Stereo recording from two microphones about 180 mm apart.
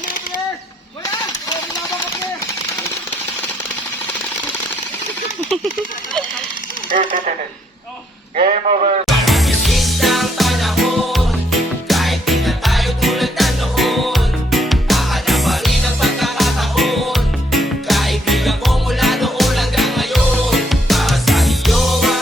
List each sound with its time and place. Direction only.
6.9 s speech: 45° right (ahead or behind)
8.4 s a man's voice: 35° right (ahead or behind)
9.0 s music: centre (ahead or behind)